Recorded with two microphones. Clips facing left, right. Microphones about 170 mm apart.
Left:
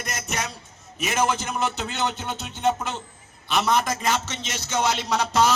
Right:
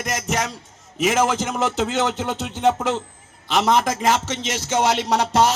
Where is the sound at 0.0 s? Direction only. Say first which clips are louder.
Right 6 dB; 90° right.